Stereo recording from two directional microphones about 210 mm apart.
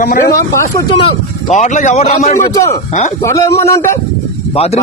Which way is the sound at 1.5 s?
35° left (ahead or behind).